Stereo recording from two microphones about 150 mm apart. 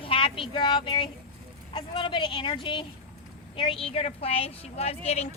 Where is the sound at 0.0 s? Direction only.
35° left (ahead or behind).